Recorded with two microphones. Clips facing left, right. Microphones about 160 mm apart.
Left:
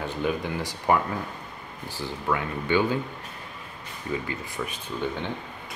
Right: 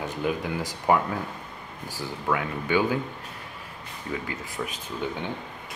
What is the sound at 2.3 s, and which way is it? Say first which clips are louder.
Speech: even; 10° right (ahead or behind).